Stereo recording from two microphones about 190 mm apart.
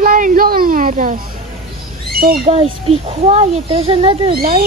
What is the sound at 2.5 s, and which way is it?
Speech, 30° right (ahead or behind).